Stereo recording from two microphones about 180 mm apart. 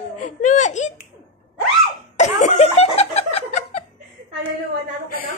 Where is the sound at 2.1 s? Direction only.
40° left (ahead or behind).